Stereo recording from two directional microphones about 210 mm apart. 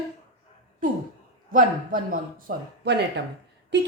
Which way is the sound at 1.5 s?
40° right (ahead or behind).